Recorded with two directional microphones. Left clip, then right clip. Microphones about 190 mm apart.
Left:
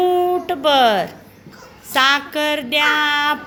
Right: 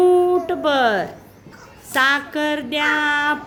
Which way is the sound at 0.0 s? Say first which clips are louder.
Right 2 dB; 20° right (ahead or behind).